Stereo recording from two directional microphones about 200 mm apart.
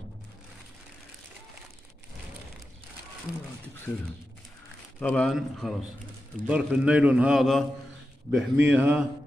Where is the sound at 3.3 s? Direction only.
5° right (ahead or behind).